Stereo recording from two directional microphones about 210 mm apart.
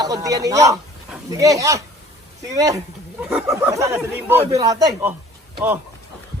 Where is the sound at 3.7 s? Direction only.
15° right (ahead or behind).